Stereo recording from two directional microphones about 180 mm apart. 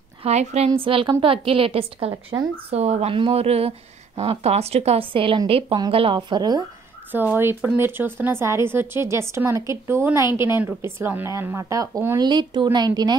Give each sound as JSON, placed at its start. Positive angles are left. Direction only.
{"t": 0.2, "sound": "a woman's voice", "side_deg": -40}
{"t": 7.1, "sound": "a woman's voice", "side_deg": -10}